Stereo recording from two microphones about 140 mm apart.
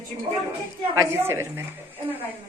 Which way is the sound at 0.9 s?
20° right (ahead or behind).